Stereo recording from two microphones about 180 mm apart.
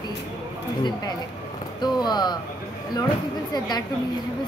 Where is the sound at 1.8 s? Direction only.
25° left (ahead or behind).